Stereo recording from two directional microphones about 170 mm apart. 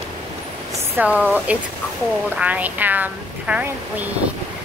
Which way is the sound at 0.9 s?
10° right (ahead or behind).